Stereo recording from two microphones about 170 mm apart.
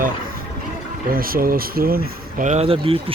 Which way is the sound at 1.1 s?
60° right (ahead or behind).